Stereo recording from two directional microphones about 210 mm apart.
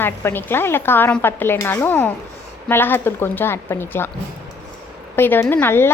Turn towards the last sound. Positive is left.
turn(degrees=10)  # may be behind; listen again after turning